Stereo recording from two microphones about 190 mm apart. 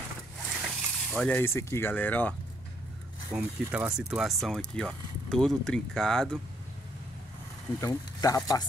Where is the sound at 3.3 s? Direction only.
5° right (ahead or behind).